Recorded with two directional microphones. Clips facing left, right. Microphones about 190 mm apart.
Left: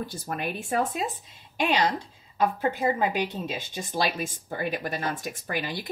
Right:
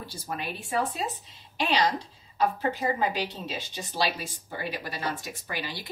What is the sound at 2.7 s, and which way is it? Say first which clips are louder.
Speech: left 2 dB; 15° left (ahead or behind).